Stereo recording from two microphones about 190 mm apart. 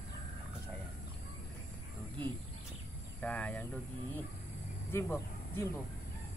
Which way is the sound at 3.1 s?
5° left (ahead or behind).